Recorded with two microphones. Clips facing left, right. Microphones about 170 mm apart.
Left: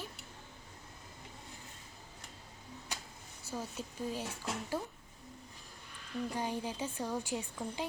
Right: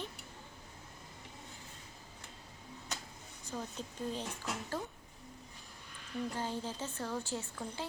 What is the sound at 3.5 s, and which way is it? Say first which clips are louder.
Speech: left 1 dB; 10° left (ahead or behind).